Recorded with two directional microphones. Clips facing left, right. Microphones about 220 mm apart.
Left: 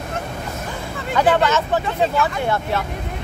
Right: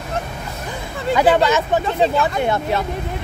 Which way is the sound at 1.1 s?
10° right (ahead or behind).